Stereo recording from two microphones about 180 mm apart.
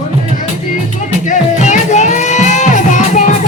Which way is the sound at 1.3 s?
40° left (ahead or behind).